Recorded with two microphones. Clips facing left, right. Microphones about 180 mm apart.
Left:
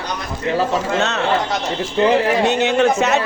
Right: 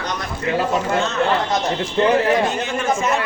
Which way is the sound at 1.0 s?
75° left (ahead or behind).